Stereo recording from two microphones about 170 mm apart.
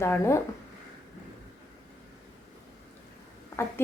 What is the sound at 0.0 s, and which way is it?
Speech, 15° left (ahead or behind).